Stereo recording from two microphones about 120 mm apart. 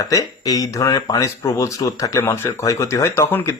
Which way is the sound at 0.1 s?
30° left (ahead or behind).